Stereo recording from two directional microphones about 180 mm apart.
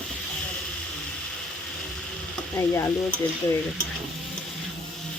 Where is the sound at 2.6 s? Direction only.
15° left (ahead or behind).